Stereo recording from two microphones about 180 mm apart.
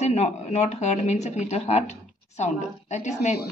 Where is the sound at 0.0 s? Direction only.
35° left (ahead or behind).